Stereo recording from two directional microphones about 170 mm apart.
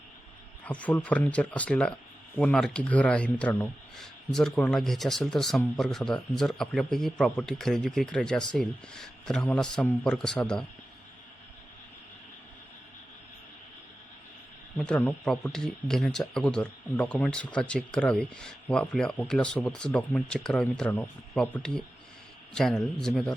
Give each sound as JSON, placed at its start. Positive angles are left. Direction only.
{"t": 0.6, "sound": "speech", "side_deg": 10}
{"t": 14.8, "sound": "speech", "side_deg": 5}